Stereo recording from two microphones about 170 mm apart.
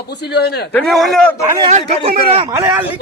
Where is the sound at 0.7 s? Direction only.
Centre (ahead or behind).